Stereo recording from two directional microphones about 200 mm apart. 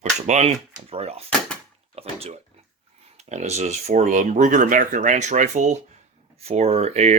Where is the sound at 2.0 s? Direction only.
30° right (ahead or behind).